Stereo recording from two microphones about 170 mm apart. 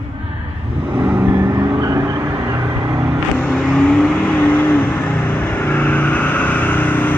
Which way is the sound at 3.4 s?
5° left (ahead or behind).